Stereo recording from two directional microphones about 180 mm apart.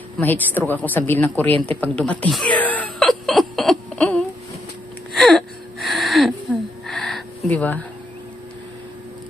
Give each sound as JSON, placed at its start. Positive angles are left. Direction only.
{"t": 0.2, "sound": "speech", "side_deg": 10}
{"t": 5.1, "sound": "gasp", "side_deg": 0}
{"t": 6.9, "sound": "a sound", "side_deg": 0}
{"t": 7.5, "sound": "speech", "side_deg": 10}